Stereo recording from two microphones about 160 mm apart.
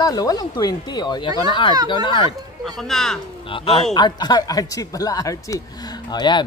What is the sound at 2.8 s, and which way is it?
Speech, 5° left (ahead or behind).